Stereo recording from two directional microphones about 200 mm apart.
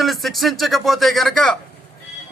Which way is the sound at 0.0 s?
Centre (ahead or behind).